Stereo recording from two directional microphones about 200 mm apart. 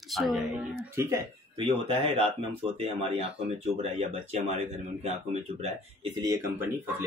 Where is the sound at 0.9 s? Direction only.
15° right (ahead or behind).